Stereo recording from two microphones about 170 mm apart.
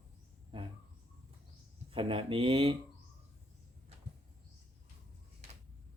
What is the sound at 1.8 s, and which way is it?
Speech, 30° right (ahead or behind).